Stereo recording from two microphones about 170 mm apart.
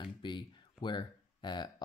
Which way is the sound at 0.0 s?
30° left (ahead or behind).